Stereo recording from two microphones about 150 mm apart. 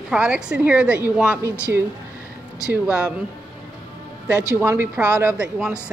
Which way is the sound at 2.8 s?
5° right (ahead or behind).